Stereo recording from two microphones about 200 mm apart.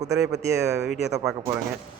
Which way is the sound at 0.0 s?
15° right (ahead or behind).